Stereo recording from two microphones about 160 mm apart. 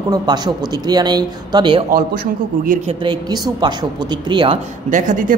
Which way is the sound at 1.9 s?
60° right (ahead or behind).